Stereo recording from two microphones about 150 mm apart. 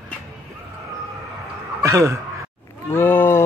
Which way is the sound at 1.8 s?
20° right (ahead or behind).